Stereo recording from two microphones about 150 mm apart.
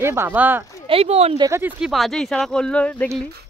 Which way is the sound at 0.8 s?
40° right (ahead or behind).